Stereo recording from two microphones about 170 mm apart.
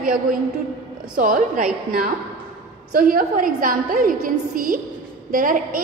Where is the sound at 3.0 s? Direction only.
55° right (ahead or behind).